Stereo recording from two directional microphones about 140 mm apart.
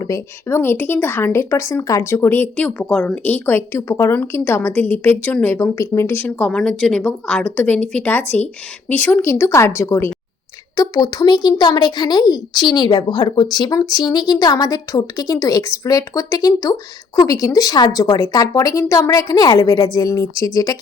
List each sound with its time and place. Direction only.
0.0 s speech: 20° left (ahead or behind)